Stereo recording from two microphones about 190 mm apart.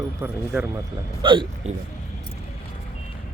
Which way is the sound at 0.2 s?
10° right (ahead or behind).